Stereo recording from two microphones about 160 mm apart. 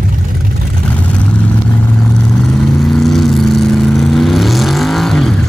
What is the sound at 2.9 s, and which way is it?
Vehicle, centre (ahead or behind).